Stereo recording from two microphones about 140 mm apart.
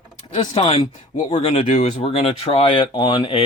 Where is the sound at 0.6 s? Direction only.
50° left (ahead or behind).